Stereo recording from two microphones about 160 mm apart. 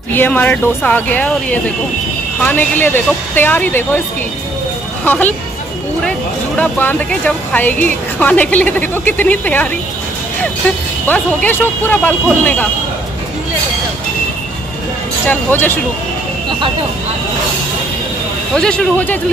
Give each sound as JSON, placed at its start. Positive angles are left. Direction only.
{"t": 0.1, "sound": "a woman's voice", "side_deg": 10}
{"t": 5.0, "sound": "speech", "side_deg": 10}
{"t": 6.6, "sound": "a woman's voice", "side_deg": 10}
{"t": 11.1, "sound": "a woman's voice", "side_deg": 10}
{"t": 15.2, "sound": "a woman's voice", "side_deg": 10}
{"t": 18.5, "sound": "speech", "side_deg": 5}